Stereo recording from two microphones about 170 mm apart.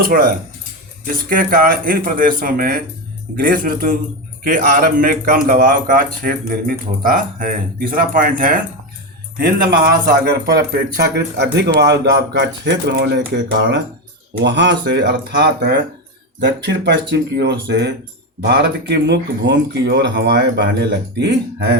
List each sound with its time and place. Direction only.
0.0 s a man's voice: 55° right (ahead or behind); by 11.4 s 75° right (ahead or behind)
11.5 s speech: 85° right
18.4 s speech: 80° right